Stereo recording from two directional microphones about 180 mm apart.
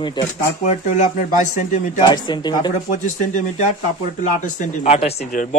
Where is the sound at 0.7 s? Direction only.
40° left (ahead or behind).